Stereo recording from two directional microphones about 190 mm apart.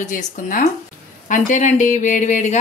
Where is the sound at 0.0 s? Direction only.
40° left (ahead or behind).